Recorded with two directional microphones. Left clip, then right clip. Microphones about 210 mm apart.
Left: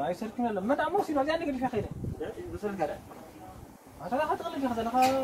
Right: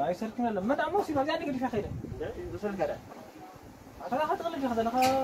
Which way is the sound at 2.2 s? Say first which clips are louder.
Even; 20° left (ahead or behind).